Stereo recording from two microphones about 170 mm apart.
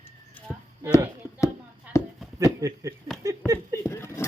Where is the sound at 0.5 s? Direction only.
Centre (ahead or behind).